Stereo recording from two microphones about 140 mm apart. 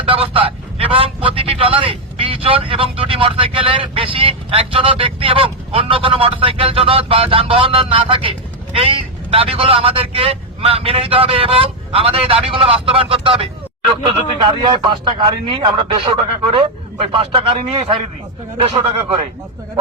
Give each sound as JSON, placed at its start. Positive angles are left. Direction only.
{"t": 0.1, "sound": "a man's voice", "side_deg": -40}
{"t": 9.3, "sound": "a man's voice", "side_deg": -45}